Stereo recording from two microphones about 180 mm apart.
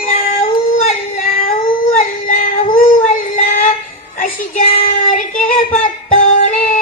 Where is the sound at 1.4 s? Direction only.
50° left (ahead or behind).